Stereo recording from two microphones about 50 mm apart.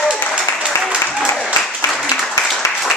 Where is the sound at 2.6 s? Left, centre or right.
Left.